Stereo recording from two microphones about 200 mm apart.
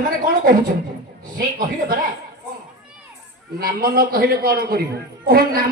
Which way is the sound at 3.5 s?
45° right (ahead or behind).